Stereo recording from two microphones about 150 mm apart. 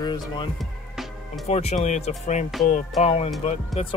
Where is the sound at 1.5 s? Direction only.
45° left (ahead or behind).